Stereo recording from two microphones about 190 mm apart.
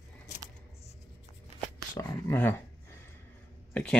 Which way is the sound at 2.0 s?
20° left (ahead or behind).